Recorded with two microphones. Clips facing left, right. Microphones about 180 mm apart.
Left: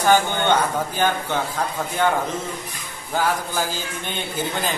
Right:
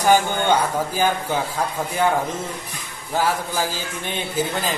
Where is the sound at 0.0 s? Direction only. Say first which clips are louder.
Right 1 dB; 10° right (ahead or behind).